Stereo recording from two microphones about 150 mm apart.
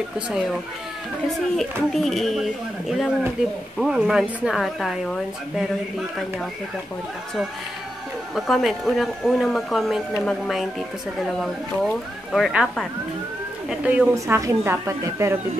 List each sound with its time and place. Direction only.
1.3 s speech: centre (ahead or behind)
8.4 s a woman's voice: centre (ahead or behind)
14.1 s a woman's voice: 20° right (ahead or behind)